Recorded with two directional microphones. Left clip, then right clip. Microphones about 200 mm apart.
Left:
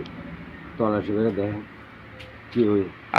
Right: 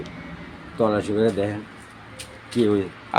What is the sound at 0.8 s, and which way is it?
Speech, 30° right (ahead or behind).